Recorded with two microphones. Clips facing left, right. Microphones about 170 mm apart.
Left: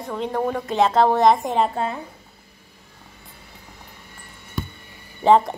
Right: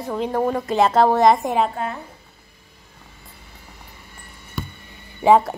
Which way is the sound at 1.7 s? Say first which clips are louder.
Left 2 dB; 25° left (ahead or behind).